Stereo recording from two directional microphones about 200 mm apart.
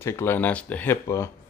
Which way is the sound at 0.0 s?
10° left (ahead or behind).